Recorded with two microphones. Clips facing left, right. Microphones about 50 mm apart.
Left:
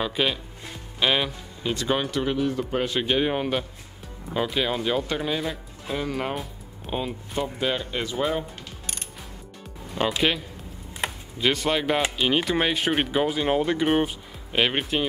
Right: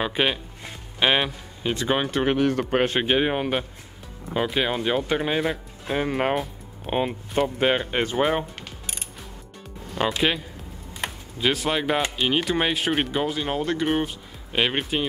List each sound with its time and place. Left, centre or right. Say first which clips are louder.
0.0 s speech: right 2 dB; right
2.2 s a man's voice: right 4 dB; right
3.0 s speech: right 2 dB; right
5.9 s speech: right 5 dB; right
9.9 s speech: right 1 dB; centre